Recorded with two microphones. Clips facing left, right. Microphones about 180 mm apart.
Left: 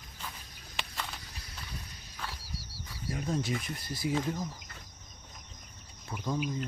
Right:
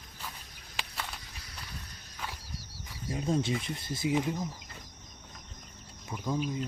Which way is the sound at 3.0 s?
25° right (ahead or behind).